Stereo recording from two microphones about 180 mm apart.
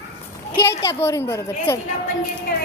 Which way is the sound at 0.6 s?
15° left (ahead or behind).